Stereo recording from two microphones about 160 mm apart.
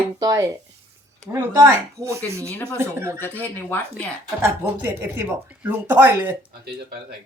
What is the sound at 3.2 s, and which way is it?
Speech, 10° left (ahead or behind).